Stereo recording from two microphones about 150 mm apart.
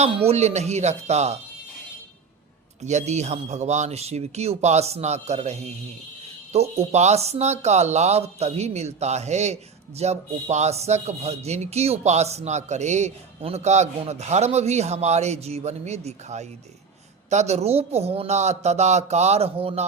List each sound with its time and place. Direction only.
0.0 s speech: 40° right (ahead or behind)
2.8 s speech: 50° right (ahead or behind)